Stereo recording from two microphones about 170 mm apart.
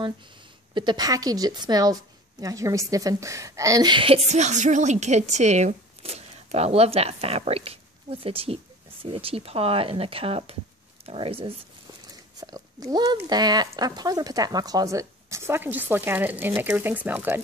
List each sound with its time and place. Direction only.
0.7 s a woman's voice: 25° right (ahead or behind)
12.4 s speech: 20° right (ahead or behind)